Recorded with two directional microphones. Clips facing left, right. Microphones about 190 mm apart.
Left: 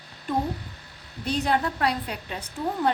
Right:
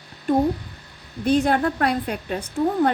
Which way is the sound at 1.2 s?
50° right (ahead or behind).